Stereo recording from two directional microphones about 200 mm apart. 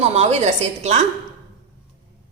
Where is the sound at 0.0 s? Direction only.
30° right (ahead or behind).